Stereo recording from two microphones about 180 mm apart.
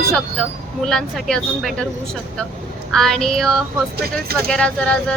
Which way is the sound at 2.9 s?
Centre (ahead or behind).